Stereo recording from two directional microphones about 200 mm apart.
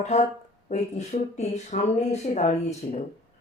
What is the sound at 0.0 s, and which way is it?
Speech, 35° left (ahead or behind).